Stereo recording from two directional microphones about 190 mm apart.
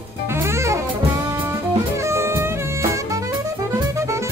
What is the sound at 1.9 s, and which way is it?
Music, 15° right (ahead or behind).